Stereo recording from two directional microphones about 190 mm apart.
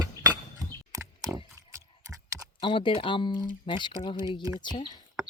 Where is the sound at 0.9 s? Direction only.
15° right (ahead or behind).